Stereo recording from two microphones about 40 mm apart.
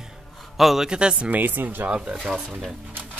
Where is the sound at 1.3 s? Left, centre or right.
Right.